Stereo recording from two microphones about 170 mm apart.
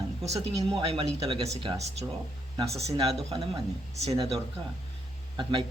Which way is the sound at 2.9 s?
35° right (ahead or behind).